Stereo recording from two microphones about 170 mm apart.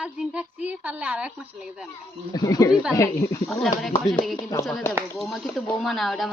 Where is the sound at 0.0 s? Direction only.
5° right (ahead or behind).